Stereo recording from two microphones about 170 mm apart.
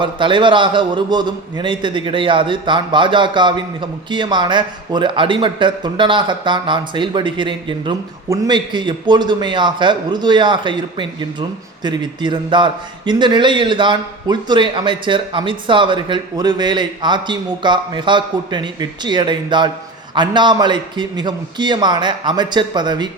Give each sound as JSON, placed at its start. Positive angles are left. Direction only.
{"t": 0.0, "sound": "a man's voice", "side_deg": -30}